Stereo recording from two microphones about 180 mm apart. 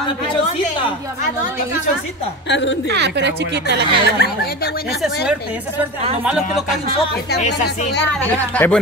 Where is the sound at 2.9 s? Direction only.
75° right (ahead or behind).